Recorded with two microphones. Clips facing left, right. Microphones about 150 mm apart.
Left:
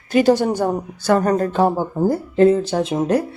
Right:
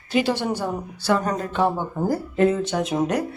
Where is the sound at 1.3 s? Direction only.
40° left (ahead or behind).